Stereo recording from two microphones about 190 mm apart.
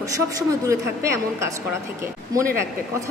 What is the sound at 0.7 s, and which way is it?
Speech, 15° right (ahead or behind).